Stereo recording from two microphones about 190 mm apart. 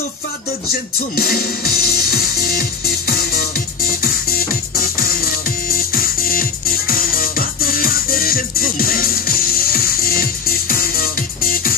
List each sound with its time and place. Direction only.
1.1 s music: 55° left (ahead or behind)